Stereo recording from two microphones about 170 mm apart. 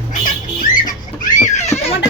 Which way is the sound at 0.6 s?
50° left (ahead or behind).